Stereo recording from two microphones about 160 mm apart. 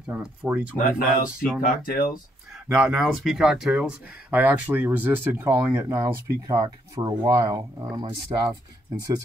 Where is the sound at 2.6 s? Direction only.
5° right (ahead or behind).